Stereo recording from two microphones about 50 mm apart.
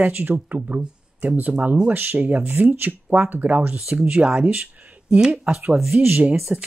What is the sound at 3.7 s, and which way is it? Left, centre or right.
Speech, centre.